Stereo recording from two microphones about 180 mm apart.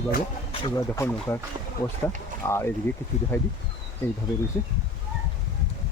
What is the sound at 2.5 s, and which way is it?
Speech, 15° left (ahead or behind).